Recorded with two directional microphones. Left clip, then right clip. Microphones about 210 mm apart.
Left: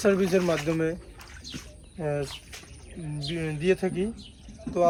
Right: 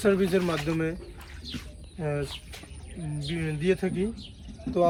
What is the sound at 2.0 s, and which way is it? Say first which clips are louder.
Speech: left 2 dB; 45° left (ahead or behind).